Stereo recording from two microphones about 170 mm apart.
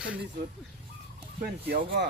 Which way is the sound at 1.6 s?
75° right (ahead or behind).